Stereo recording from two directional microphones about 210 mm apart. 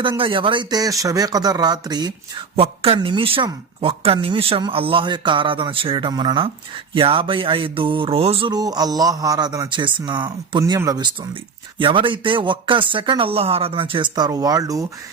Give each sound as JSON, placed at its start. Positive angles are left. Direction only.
{"t": 0.0, "sound": "speech", "side_deg": -25}